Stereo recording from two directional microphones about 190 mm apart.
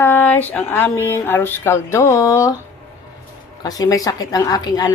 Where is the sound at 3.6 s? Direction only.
20° left (ahead or behind).